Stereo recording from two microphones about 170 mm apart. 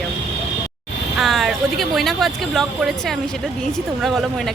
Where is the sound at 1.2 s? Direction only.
Centre (ahead or behind).